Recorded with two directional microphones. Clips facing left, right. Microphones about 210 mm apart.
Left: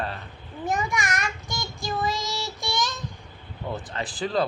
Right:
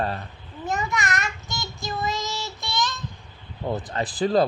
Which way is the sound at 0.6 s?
15° left (ahead or behind).